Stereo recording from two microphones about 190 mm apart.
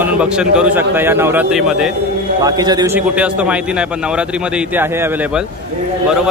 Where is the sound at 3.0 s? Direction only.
5° right (ahead or behind).